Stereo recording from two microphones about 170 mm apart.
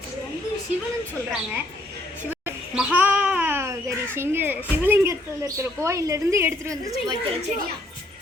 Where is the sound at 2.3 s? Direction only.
10° right (ahead or behind).